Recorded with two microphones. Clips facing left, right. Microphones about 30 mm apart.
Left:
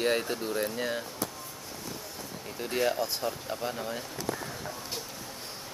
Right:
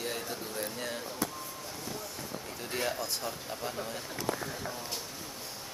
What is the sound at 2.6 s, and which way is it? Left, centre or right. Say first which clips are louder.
Speech: left 6 dB; centre.